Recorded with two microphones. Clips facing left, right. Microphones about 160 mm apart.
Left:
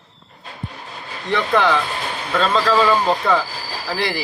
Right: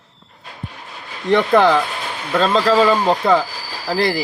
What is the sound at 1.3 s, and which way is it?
Speech, 40° right (ahead or behind).